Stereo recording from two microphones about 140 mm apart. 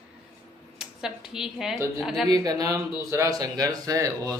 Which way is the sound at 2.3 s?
25° right (ahead or behind).